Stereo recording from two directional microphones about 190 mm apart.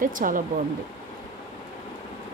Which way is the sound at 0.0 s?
45° right (ahead or behind).